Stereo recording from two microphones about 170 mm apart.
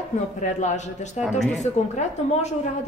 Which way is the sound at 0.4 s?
45° left (ahead or behind).